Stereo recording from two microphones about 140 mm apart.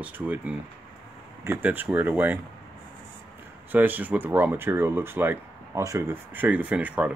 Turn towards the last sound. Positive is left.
turn(degrees=-10)  # may be behind; listen again after turning